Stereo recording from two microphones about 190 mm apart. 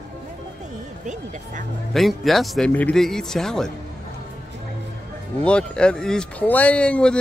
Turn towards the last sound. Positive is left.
turn(degrees=5)  # may be behind; listen again after turning